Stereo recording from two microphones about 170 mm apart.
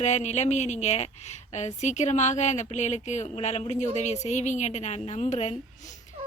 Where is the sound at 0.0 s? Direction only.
40° left (ahead or behind).